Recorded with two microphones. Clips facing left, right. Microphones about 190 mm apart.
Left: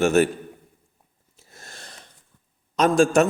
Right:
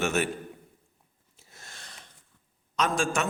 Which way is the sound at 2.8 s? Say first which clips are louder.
Left 10 dB; 40° left (ahead or behind).